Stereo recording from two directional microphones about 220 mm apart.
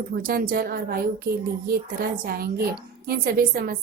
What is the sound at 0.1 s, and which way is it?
A woman's voice, 40° right (ahead or behind).